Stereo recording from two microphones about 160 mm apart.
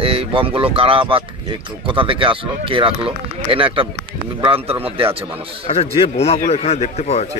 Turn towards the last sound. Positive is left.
turn(degrees=40)  # may be behind; listen again after turning